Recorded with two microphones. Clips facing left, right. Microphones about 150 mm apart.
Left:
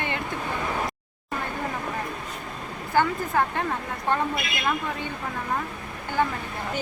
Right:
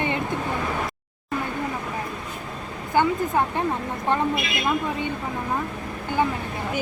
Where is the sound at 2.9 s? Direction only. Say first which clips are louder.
Right 2 dB; 20° right (ahead or behind).